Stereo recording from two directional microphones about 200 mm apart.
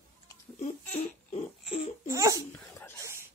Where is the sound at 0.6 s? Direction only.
30° left (ahead or behind).